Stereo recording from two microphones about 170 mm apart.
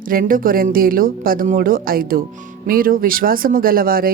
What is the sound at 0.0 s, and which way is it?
Speech, 55° right (ahead or behind).